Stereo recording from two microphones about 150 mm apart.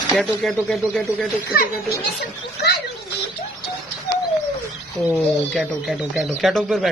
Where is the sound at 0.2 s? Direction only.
Centre (ahead or behind).